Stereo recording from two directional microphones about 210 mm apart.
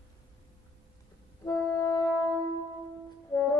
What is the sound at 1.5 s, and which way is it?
Music, 15° left (ahead or behind).